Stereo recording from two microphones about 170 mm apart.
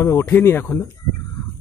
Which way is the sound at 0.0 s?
15° left (ahead or behind).